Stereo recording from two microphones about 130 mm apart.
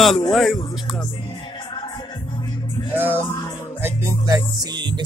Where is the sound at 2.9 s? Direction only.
15° right (ahead or behind).